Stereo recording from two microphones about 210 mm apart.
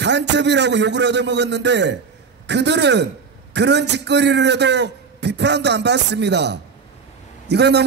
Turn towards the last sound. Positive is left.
turn(degrees=-50)  # may be behind; listen again after turning